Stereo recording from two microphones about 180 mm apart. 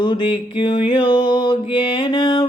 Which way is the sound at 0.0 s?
25° left (ahead or behind).